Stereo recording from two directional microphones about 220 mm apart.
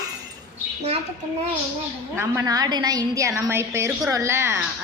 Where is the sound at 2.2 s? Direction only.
15° right (ahead or behind).